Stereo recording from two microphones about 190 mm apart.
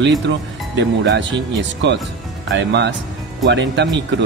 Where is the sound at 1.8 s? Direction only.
65° right (ahead or behind).